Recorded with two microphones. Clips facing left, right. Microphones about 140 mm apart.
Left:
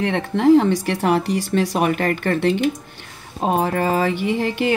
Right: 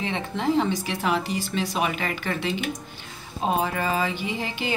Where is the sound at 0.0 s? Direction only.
60° left (ahead or behind).